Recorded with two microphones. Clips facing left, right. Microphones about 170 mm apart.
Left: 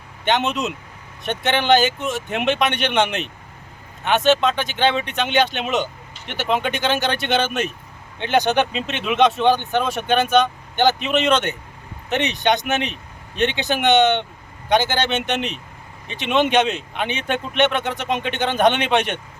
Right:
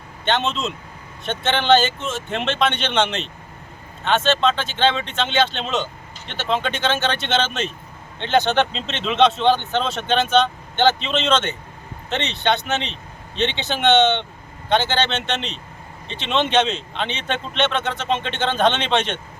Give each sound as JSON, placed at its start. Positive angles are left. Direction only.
{"t": 0.3, "sound": "speech", "side_deg": 15}